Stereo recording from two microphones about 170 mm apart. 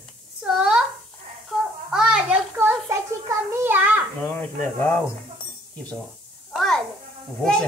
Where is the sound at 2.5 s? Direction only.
15° right (ahead or behind).